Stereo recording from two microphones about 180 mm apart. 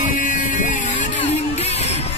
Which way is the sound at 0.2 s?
45° left (ahead or behind).